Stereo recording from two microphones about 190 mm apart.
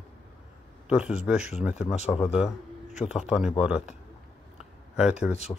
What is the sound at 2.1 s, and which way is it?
Speech, centre (ahead or behind).